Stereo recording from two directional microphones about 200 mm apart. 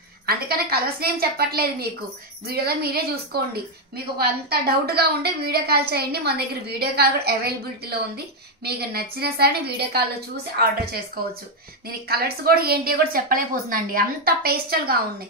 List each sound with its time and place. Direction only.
0.3 s a woman's voice: 50° right (ahead or behind)
12.1 s a woman's voice: 50° right (ahead or behind)